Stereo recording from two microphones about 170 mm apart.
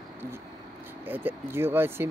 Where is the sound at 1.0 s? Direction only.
10° right (ahead or behind).